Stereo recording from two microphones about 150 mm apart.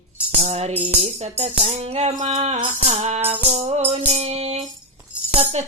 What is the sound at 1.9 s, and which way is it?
Speech, 45° right (ahead or behind).